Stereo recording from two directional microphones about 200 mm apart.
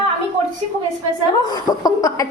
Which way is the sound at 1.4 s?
20° left (ahead or behind).